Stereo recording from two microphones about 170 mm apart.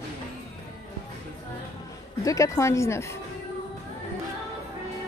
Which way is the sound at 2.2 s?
20° left (ahead or behind).